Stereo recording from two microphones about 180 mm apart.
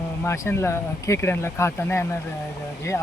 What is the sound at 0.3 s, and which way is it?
Speech, 15° left (ahead or behind).